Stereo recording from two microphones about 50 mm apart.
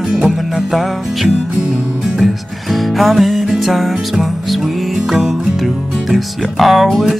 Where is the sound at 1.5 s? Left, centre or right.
Centre.